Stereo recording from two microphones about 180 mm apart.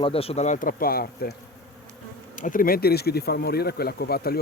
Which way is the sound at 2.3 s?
45° left (ahead or behind).